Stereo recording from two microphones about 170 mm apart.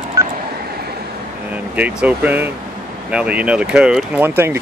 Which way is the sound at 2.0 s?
10° right (ahead or behind).